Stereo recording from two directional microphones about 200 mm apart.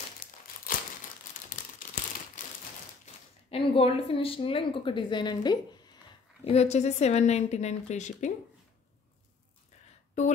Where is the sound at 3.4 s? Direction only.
25° left (ahead or behind).